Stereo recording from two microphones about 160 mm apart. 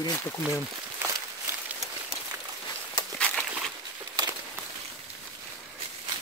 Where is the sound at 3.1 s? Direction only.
5° left (ahead or behind).